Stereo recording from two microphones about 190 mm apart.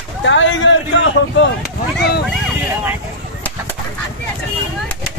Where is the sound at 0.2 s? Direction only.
75° left (ahead or behind).